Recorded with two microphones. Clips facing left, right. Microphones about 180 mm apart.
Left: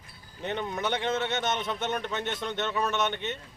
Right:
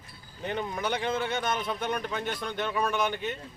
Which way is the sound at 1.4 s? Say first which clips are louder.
Even; 25° left (ahead or behind).